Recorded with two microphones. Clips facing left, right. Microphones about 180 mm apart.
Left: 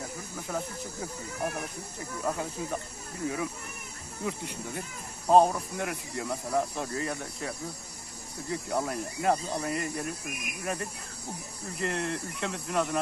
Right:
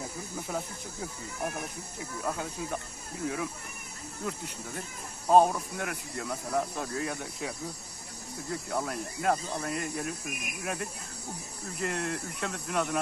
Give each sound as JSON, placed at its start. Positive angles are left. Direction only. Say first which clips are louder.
{"t": 2.0, "sound": "speech", "louder": "left 2 dB", "side_deg": 0}